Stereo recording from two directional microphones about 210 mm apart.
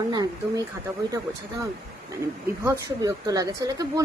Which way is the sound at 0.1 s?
20° right (ahead or behind).